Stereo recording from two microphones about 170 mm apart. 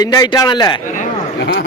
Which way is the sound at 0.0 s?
25° left (ahead or behind).